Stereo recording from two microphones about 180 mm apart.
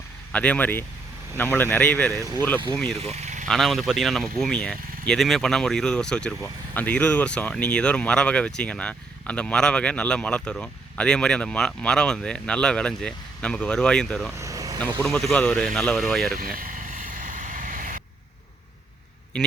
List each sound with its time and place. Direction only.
0.3 s speech: 5° left (ahead or behind)
2.1 s speech: 20° right (ahead or behind)
2.7 s speech: 5° left (ahead or behind)
3.0 s speech: 40° right (ahead or behind)
3.4 s speech: centre (ahead or behind)
14.3 s vehicle: 15° right (ahead or behind)
14.8 s speech: 10° left (ahead or behind)
16.6 s vehicle: 50° right (ahead or behind)
19.3 s a man's voice: 5° left (ahead or behind)